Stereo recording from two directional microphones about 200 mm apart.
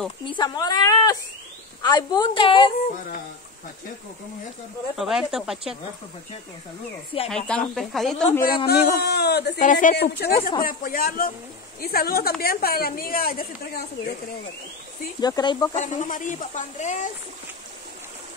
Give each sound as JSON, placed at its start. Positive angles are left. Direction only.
{"t": 0.2, "sound": "a woman's voice", "side_deg": 20}
{"t": 4.9, "sound": "speech", "side_deg": 0}
{"t": 7.2, "sound": "speech", "side_deg": 5}
{"t": 8.3, "sound": "a woman's voice", "side_deg": 45}
{"t": 8.6, "sound": "a man's voice", "side_deg": 55}
{"t": 9.6, "sound": "a woman's voice", "side_deg": 40}
{"t": 15.1, "sound": "a woman's voice", "side_deg": 20}
{"t": 15.7, "sound": "speech", "side_deg": 40}